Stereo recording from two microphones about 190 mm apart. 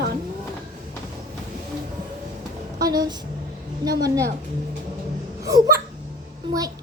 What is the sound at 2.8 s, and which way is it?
A woman's voice, 20° right (ahead or behind).